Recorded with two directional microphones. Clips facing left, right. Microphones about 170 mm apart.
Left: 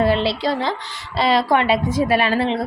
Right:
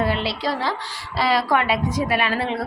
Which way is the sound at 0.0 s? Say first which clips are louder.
Left 5 dB; 30° left (ahead or behind).